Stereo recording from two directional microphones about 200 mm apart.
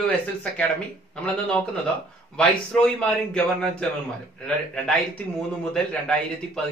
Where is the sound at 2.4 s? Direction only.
5° left (ahead or behind).